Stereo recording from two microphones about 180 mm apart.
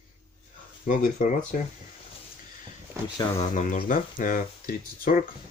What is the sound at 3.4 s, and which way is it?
Speech, 45° left (ahead or behind).